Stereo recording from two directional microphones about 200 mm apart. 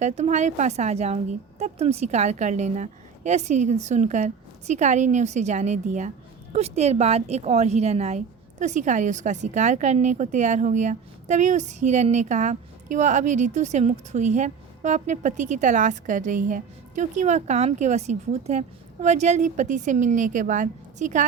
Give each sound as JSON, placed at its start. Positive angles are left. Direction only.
{"t": 0.0, "sound": "speech", "side_deg": -35}